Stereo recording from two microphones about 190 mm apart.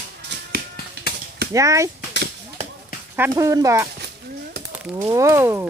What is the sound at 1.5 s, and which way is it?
Speech, 15° right (ahead or behind).